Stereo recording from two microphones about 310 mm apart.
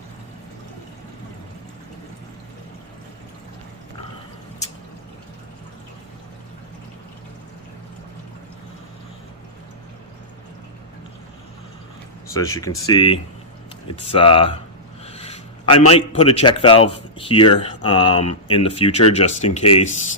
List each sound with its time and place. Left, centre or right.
12.3 s speech: centre
15.0 s a sound: centre
15.9 s speech: centre